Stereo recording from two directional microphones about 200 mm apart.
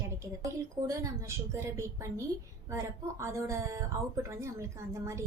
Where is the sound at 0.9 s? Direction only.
15° right (ahead or behind).